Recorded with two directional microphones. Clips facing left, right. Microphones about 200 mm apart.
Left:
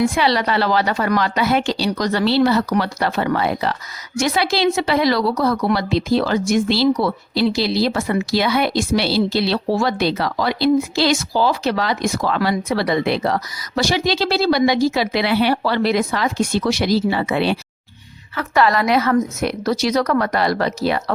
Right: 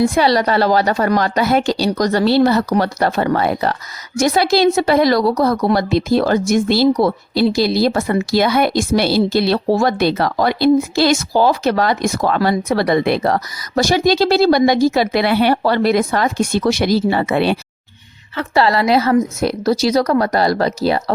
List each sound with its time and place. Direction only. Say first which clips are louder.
0.1 s a woman's voice: right 4 dB; 40° right (ahead or behind)
18.3 s a woman's voice: right 2 dB; 30° right (ahead or behind)